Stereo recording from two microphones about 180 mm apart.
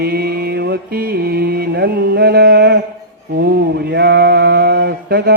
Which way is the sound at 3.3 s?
65° right (ahead or behind).